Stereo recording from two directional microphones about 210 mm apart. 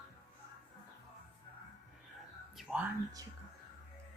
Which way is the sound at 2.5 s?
5° right (ahead or behind).